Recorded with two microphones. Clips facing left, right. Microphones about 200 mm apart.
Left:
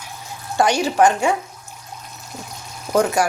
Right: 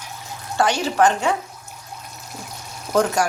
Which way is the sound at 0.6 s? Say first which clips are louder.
Left 2 dB; 15° left (ahead or behind).